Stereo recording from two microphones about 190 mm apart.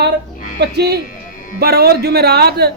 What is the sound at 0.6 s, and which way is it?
A man's voice, 60° right (ahead or behind).